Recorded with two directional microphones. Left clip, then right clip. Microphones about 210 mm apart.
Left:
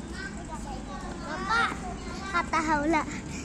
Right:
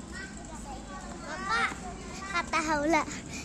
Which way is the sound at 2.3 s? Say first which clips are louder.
Left 3 dB; 30° right (ahead or behind).